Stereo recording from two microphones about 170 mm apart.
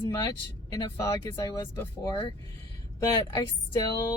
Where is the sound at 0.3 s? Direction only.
20° left (ahead or behind).